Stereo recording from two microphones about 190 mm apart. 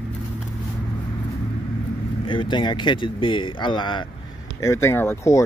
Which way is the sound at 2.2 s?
25° left (ahead or behind).